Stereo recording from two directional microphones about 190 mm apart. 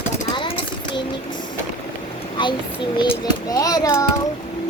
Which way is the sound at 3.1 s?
20° left (ahead or behind).